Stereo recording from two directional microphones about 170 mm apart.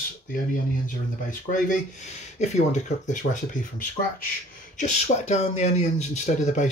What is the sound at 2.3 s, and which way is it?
Speech, 40° left (ahead or behind).